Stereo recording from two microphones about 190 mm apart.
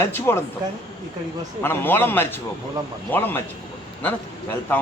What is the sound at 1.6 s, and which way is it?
A man's voice, 10° left (ahead or behind).